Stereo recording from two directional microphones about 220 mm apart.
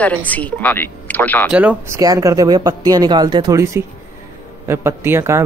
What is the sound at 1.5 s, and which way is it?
Speech, 10° right (ahead or behind).